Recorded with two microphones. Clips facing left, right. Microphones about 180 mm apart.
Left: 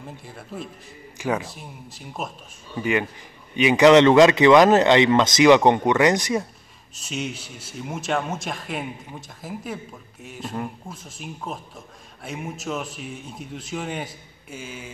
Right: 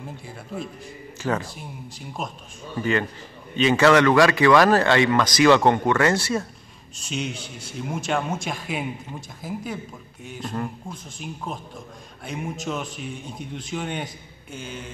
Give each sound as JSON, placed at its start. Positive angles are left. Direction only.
{"t": 1.1, "sound": "speech", "side_deg": 15}
{"t": 1.4, "sound": "a man's voice", "side_deg": 0}
{"t": 2.8, "sound": "speech", "side_deg": 15}
{"t": 7.0, "sound": "a man's voice", "side_deg": 5}